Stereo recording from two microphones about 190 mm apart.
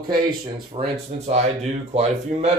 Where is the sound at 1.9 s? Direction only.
35° right (ahead or behind).